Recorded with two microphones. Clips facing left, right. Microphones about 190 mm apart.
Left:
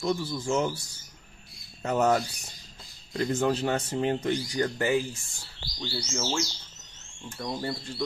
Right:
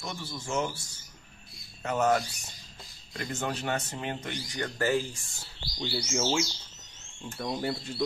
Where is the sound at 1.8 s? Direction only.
35° left (ahead or behind).